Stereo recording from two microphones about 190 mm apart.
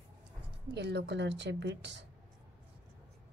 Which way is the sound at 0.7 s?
65° right (ahead or behind).